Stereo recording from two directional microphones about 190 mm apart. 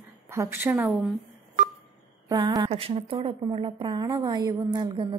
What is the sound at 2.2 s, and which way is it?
A woman's voice, 20° right (ahead or behind).